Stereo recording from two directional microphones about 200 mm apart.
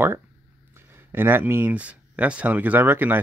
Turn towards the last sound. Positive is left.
turn(degrees=-10)  # may be behind; listen again after turning